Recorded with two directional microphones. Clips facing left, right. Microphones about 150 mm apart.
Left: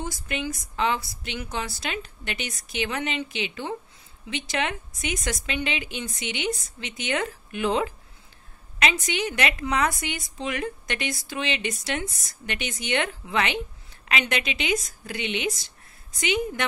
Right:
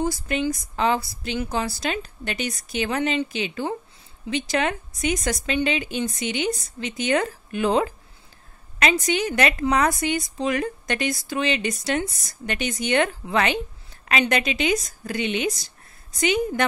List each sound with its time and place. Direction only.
0.0 s a woman's voice: 35° right (ahead or behind)